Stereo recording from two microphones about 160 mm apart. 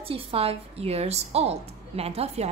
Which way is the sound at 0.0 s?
35° right (ahead or behind).